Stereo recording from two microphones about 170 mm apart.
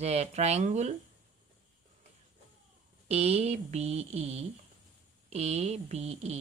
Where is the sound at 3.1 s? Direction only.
40° right (ahead or behind).